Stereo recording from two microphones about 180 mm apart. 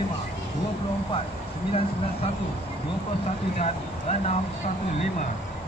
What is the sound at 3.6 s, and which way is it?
Speech, 35° left (ahead or behind).